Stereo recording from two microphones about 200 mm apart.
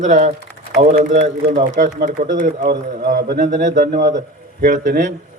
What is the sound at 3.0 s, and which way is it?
Speech, 55° right (ahead or behind).